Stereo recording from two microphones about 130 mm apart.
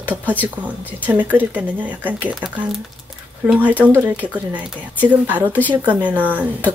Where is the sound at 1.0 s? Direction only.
15° right (ahead or behind).